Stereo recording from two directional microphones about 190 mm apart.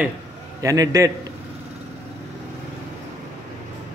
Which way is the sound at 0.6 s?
15° right (ahead or behind).